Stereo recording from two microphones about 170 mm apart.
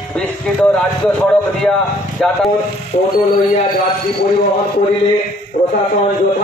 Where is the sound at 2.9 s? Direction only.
45° left (ahead or behind).